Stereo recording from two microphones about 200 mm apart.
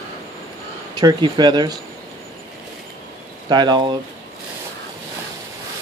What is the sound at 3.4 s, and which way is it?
Speech, 20° right (ahead or behind).